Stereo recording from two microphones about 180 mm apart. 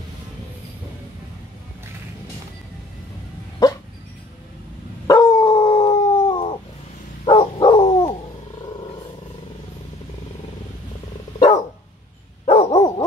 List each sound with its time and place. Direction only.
3.6 s dog: 20° left (ahead or behind)
5.0 s dog: 20° left (ahead or behind)
7.2 s a sound: 25° left (ahead or behind)
12.4 s dog: 25° left (ahead or behind)